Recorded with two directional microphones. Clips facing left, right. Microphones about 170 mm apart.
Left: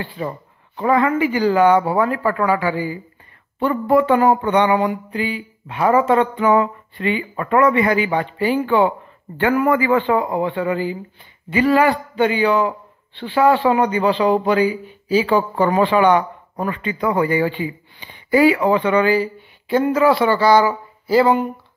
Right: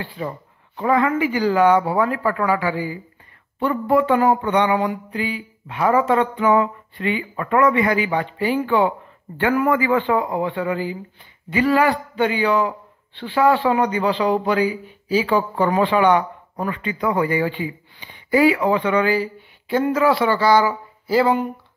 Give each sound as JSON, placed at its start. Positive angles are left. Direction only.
{"t": 0.2, "sound": "speech", "side_deg": 40}